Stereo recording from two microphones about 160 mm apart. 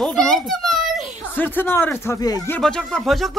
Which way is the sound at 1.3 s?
10° left (ahead or behind).